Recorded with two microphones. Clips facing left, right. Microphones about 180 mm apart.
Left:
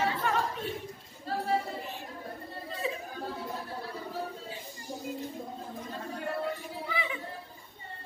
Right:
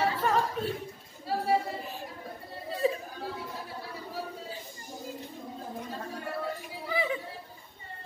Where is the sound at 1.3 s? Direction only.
10° right (ahead or behind).